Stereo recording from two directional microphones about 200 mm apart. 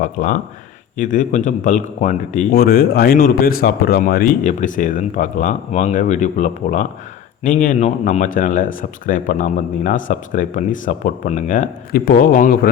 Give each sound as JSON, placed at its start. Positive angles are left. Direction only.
{"t": 0.0, "sound": "speech", "side_deg": 40}